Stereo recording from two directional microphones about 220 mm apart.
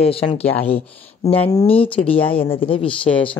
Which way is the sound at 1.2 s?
15° left (ahead or behind).